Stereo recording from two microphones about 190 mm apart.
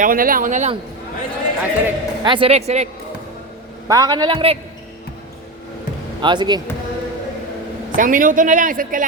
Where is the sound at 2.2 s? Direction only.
25° right (ahead or behind).